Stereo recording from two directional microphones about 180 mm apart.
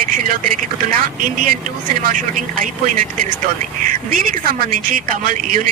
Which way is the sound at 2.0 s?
50° right (ahead or behind).